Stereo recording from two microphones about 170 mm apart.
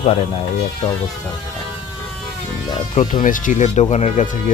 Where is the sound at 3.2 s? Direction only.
50° left (ahead or behind).